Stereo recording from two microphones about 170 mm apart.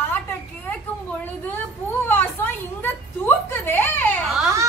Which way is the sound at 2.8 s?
10° left (ahead or behind).